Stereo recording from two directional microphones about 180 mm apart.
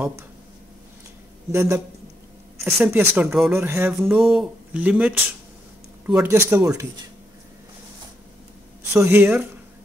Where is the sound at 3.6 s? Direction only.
15° right (ahead or behind).